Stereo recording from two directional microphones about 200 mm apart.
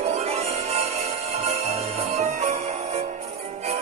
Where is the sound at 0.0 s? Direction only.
30° right (ahead or behind).